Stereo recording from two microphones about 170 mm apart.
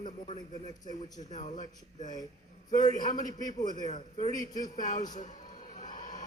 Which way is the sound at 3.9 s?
40° left (ahead or behind).